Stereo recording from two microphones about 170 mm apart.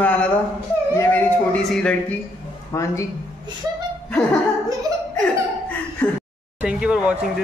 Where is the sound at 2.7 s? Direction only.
20° left (ahead or behind).